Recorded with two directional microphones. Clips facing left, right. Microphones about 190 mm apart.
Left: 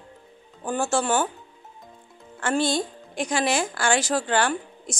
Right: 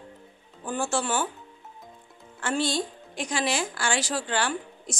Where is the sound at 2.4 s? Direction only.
50° left (ahead or behind).